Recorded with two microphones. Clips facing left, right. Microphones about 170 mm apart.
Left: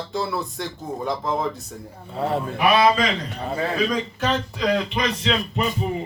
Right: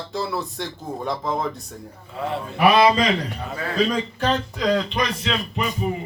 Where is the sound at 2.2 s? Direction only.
35° left (ahead or behind).